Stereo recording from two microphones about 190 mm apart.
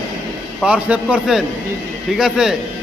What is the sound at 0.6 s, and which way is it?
A man's voice, 5° right (ahead or behind).